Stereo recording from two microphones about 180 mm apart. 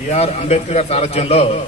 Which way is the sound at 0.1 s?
35° left (ahead or behind).